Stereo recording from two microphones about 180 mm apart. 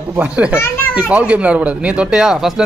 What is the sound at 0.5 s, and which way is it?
Children playing, 15° left (ahead or behind).